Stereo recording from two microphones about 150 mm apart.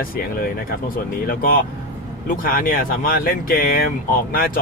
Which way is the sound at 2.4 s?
70° left (ahead or behind).